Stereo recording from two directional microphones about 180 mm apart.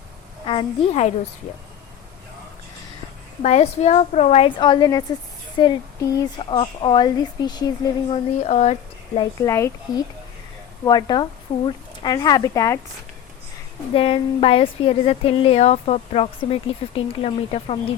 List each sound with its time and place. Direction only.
0.4 s a woman's voice: 35° left (ahead or behind)
3.4 s a woman's voice: 40° left (ahead or behind); by 7.7 s 25° left (ahead or behind)
8.1 s a woman's voice: 35° left (ahead or behind)
9.4 s a woman's voice: 20° left (ahead or behind)
13.9 s a woman's voice: 30° left (ahead or behind)